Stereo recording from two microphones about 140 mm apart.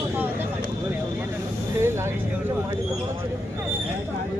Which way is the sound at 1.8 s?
15° right (ahead or behind).